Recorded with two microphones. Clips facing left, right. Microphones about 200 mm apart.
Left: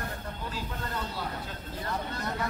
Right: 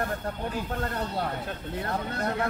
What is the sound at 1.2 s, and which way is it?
Speech, 60° right (ahead or behind).